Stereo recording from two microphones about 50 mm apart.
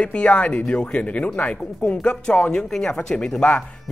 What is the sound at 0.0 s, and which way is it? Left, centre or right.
Speech, left.